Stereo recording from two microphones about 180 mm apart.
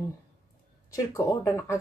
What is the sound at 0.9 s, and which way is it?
Speech, 15° left (ahead or behind).